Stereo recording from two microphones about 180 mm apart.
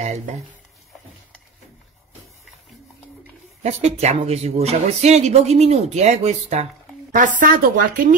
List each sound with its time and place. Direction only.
0.0 s speech: 40° right (ahead or behind)
3.6 s speech: 40° right (ahead or behind)